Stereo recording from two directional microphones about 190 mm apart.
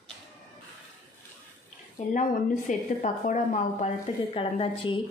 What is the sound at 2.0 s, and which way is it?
A woman's voice, 45° left (ahead or behind).